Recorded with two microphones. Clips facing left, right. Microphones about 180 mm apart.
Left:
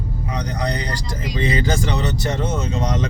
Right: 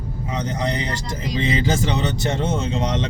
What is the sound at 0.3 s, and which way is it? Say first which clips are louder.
Speech: right 1 dB; 25° right (ahead or behind).